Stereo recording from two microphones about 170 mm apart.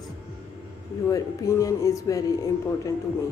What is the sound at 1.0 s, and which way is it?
A woman's voice, 20° left (ahead or behind).